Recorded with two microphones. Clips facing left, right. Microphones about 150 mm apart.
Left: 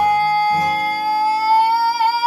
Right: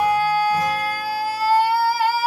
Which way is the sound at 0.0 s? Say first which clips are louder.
Left 3 dB; 40° left (ahead or behind).